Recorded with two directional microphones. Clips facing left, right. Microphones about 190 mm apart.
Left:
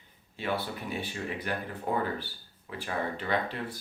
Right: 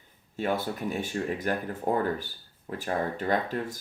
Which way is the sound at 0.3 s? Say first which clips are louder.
Right 4 dB; 45° right (ahead or behind).